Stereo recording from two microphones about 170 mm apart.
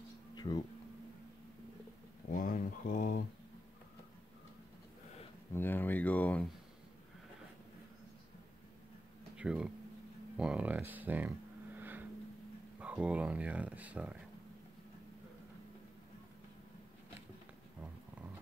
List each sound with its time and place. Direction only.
0.4 s speech: 25° left (ahead or behind)
2.2 s a sound: 50° left (ahead or behind)
5.5 s speech: 10° left (ahead or behind)
9.4 s speech: 5° right (ahead or behind)
10.3 s a sound: 5° right (ahead or behind)
12.8 s speech: 5° right (ahead or behind)